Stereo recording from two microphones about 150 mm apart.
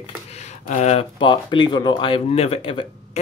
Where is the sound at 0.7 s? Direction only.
45° left (ahead or behind).